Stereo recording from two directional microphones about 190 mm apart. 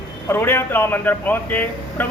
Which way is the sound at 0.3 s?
10° left (ahead or behind).